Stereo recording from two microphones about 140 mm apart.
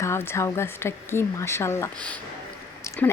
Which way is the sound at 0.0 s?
20° left (ahead or behind).